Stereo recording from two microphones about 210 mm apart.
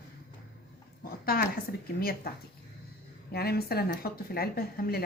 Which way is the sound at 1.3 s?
45° left (ahead or behind).